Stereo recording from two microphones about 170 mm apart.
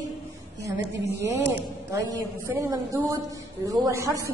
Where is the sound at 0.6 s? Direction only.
90° right.